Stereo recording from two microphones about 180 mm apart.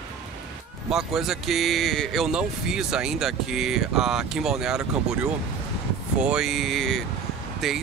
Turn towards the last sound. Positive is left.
turn(degrees=0)  # may be behind; listen again after turning